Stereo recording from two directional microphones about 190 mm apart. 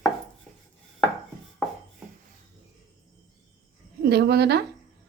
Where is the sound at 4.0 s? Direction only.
55° right (ahead or behind).